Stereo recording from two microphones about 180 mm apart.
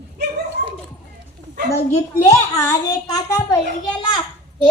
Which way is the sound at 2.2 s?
15° left (ahead or behind).